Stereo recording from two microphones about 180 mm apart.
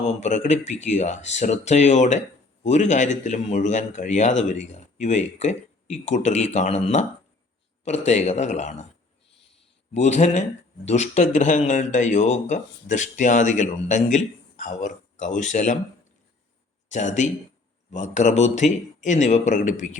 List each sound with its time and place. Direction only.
0.0 s speech: 40° left (ahead or behind)
9.9 s speech: 40° left (ahead or behind)
16.9 s speech: 40° left (ahead or behind)